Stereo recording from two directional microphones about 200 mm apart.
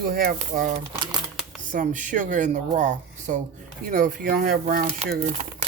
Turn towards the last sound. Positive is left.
turn(degrees=-40)  # may be behind; listen again after turning